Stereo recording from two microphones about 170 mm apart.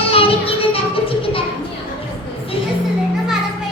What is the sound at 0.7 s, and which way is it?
Music, 30° left (ahead or behind).